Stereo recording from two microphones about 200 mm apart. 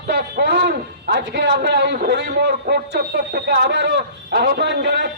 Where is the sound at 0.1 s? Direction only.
55° right (ahead or behind).